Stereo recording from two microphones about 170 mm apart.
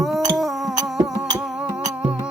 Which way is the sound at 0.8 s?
20° right (ahead or behind).